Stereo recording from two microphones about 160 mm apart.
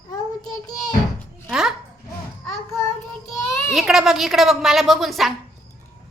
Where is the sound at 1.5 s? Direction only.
5° right (ahead or behind).